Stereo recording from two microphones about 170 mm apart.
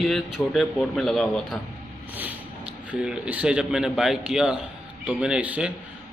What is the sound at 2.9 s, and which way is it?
A man's voice, 5° right (ahead or behind).